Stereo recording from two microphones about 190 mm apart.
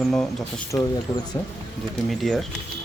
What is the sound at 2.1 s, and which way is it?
Speech, centre (ahead or behind).